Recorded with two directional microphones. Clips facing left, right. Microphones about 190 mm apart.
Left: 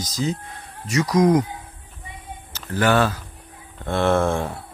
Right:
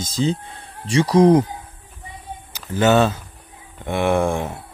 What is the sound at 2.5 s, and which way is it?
Speech, 15° right (ahead or behind).